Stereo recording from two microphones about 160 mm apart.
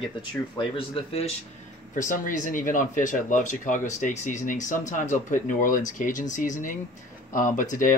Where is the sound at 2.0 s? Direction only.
55° left (ahead or behind).